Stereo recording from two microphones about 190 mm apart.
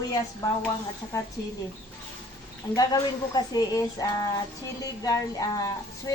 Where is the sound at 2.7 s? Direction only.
20° left (ahead or behind).